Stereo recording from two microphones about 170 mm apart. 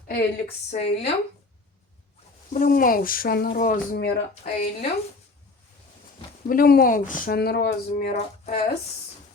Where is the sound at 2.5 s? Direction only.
55° left (ahead or behind).